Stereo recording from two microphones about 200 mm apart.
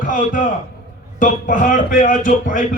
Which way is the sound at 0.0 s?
40° left (ahead or behind).